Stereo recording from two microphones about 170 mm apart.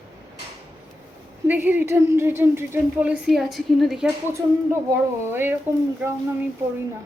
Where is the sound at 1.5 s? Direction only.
10° right (ahead or behind).